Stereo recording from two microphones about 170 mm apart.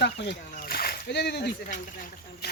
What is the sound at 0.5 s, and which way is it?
Splash, 60° left (ahead or behind).